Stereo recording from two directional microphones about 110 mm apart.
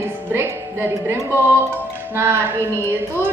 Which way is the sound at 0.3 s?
20° right (ahead or behind).